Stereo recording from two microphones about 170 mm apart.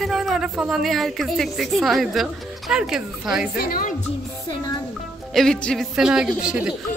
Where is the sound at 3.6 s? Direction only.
55° left (ahead or behind).